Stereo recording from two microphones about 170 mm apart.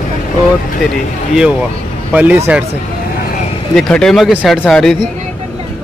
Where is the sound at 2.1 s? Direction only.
10° right (ahead or behind).